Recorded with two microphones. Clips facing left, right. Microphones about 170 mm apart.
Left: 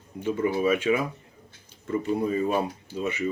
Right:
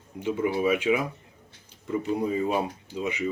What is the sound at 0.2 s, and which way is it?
Speech, 10° right (ahead or behind).